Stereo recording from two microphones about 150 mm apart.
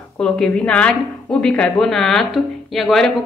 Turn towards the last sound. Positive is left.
turn(degrees=0)  # may be behind; listen again after turning